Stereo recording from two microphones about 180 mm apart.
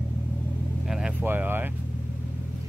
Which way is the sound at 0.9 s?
5° right (ahead or behind).